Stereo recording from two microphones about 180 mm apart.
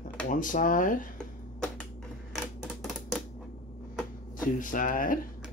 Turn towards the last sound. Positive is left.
turn(degrees=50)  # may be behind; listen again after turning